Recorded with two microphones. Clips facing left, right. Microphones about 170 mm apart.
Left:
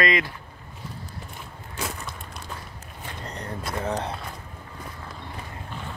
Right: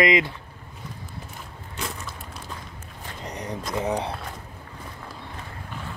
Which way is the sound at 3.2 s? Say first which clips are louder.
Right 3 dB; 15° right (ahead or behind).